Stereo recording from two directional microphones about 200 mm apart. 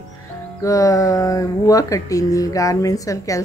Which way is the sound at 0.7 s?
15° left (ahead or behind).